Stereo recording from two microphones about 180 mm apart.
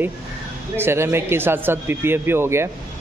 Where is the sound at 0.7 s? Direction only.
15° right (ahead or behind).